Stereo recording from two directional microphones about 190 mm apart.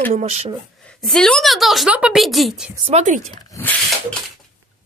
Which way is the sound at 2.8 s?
35° right (ahead or behind).